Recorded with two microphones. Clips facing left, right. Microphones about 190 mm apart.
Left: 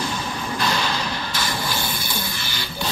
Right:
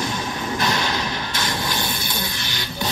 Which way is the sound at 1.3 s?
10° left (ahead or behind).